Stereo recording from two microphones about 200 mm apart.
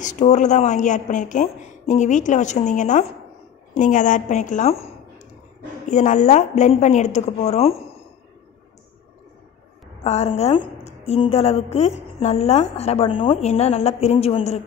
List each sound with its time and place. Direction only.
0.0 s a woman's voice: 35° left (ahead or behind)
10.0 s a woman's voice: 30° left (ahead or behind)